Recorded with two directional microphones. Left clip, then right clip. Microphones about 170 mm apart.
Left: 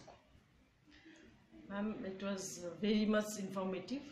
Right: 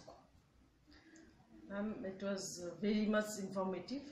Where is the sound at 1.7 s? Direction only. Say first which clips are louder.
Left 1 dB; 5° right (ahead or behind).